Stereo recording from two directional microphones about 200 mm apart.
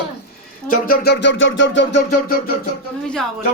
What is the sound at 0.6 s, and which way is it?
Speech, 45° left (ahead or behind).